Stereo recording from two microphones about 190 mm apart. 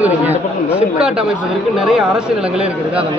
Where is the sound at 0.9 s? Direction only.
5° right (ahead or behind).